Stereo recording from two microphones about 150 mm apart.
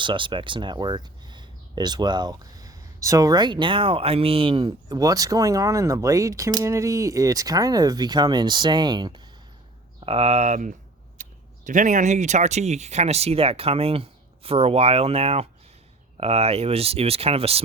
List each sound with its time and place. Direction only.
0.0 s speech: 35° right (ahead or behind)
10.0 s speech: 40° right (ahead or behind)